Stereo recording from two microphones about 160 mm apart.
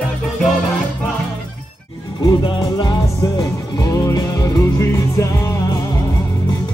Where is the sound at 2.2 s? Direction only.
25° left (ahead or behind).